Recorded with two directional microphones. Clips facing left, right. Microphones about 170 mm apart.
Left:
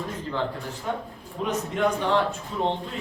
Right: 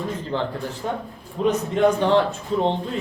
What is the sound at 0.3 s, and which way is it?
A man's voice, 30° right (ahead or behind).